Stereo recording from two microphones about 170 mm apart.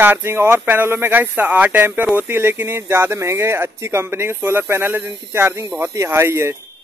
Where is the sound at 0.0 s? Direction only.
15° right (ahead or behind).